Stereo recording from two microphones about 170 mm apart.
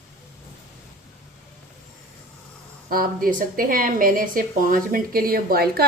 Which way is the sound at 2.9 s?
60° right (ahead or behind).